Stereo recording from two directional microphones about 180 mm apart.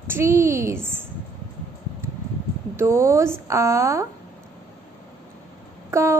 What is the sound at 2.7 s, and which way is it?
Speech, 15° right (ahead or behind).